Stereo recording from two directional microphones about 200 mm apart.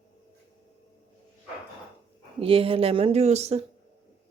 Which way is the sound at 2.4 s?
30° right (ahead or behind).